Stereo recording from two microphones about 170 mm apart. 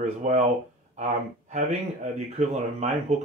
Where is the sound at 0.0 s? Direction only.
45° right (ahead or behind).